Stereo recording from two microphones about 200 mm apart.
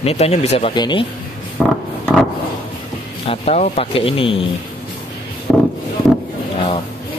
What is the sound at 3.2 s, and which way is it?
Speech, 35° left (ahead or behind).